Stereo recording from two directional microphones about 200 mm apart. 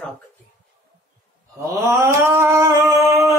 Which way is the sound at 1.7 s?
15° right (ahead or behind).